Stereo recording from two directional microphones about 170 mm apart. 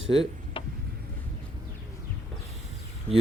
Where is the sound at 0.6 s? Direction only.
30° left (ahead or behind).